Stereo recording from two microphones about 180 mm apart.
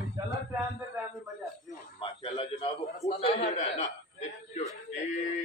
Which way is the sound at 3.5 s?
45° left (ahead or behind).